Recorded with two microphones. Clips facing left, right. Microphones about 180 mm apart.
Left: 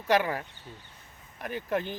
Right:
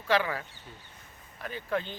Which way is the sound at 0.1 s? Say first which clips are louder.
Left 2 dB; 45° left (ahead or behind).